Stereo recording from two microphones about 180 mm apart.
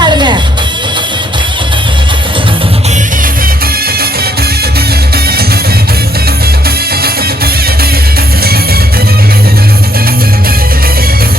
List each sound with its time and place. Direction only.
0.0 s music: 25° right (ahead or behind)